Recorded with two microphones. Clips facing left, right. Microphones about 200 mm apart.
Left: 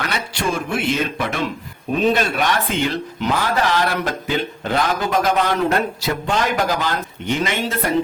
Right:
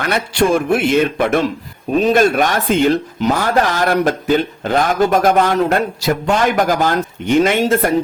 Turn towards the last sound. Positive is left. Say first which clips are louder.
# right 7 dB
turn(degrees=-45)  # may be behind; listen again after turning